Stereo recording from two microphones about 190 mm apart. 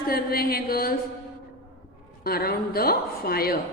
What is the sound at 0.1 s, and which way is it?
Speech, 50° left (ahead or behind).